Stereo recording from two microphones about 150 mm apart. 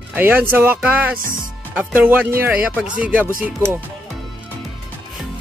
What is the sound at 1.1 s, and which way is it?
Speech, 70° right (ahead or behind).